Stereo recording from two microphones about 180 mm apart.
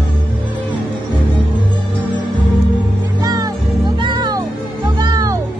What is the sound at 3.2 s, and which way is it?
Music, 20° right (ahead or behind).